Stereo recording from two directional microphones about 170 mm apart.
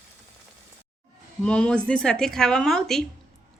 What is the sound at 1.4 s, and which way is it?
A woman's voice, 5° left (ahead or behind).